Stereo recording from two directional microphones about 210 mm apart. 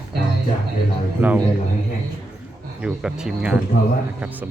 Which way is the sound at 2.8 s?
5° right (ahead or behind).